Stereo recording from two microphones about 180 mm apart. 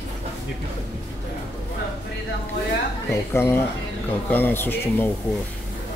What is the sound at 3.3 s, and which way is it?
Speech, 15° left (ahead or behind).